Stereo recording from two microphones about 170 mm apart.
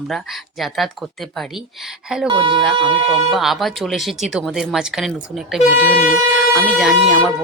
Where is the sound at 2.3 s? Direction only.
30° right (ahead or behind).